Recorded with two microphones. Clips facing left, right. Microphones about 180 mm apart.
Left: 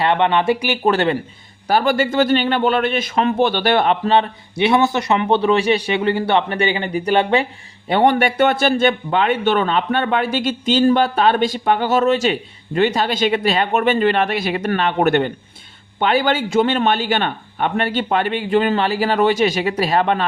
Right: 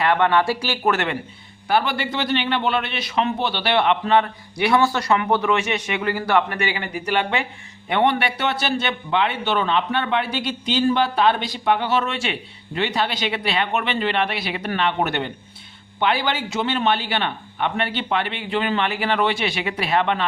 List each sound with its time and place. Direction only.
0.0 s speech: 25° left (ahead or behind)
0.9 s a man's voice: 30° left (ahead or behind)
1.6 s a man's voice: 45° left (ahead or behind)